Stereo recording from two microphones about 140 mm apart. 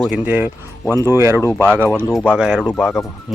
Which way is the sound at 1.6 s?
15° right (ahead or behind).